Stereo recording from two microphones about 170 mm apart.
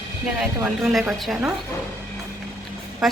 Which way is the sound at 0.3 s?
5° right (ahead or behind).